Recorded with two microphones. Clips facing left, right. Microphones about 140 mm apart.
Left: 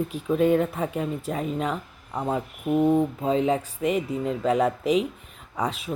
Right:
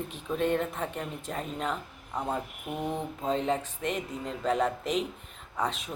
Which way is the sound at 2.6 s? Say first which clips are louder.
Left 15 dB; 30° left (ahead or behind).